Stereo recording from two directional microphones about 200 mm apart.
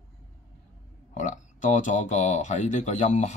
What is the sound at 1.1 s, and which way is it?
Speech, 40° left (ahead or behind).